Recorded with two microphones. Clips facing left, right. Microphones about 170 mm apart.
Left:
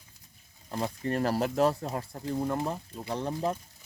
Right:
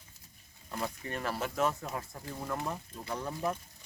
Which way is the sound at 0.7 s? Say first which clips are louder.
Left 6 dB; 35° left (ahead or behind).